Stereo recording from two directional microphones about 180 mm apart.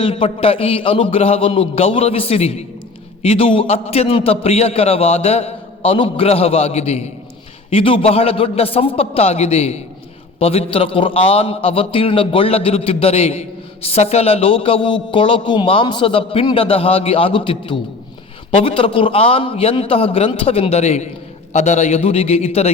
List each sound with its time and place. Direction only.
0.0 s a man's voice: 30° left (ahead or behind)